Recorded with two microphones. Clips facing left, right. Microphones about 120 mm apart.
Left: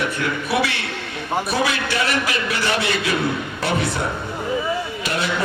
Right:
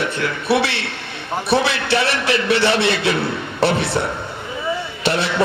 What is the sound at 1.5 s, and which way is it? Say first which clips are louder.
Speech: right 8 dB; 30° right (ahead or behind).